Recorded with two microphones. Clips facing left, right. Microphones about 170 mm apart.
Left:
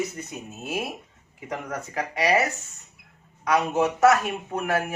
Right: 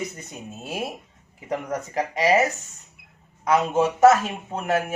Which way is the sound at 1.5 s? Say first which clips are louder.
Right 4 dB; 30° right (ahead or behind).